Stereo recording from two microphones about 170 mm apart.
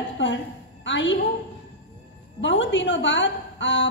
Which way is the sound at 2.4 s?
90° left.